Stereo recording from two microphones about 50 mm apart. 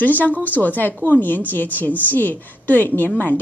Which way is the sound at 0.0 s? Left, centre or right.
Left.